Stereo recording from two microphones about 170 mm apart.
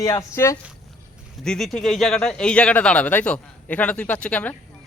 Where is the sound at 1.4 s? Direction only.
5° left (ahead or behind).